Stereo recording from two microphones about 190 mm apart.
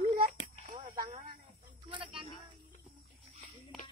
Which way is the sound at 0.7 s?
25° right (ahead or behind).